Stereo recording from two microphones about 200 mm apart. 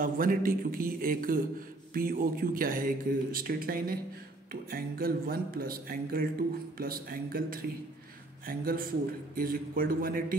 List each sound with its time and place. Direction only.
0.0 s speech: 45° right (ahead or behind)